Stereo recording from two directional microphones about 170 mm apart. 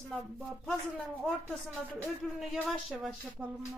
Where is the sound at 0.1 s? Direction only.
5° left (ahead or behind).